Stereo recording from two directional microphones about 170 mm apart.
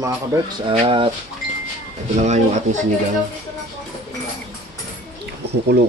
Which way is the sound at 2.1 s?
45° right (ahead or behind).